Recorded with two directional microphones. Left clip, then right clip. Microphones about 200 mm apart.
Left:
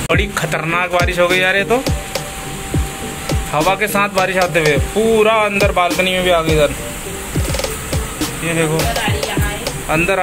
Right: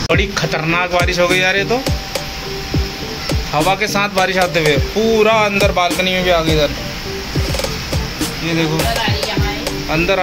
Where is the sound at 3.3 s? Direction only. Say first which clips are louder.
Even; centre (ahead or behind).